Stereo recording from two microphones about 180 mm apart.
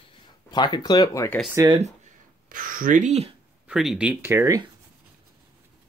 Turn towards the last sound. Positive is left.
turn(degrees=-15)  # may be behind; listen again after turning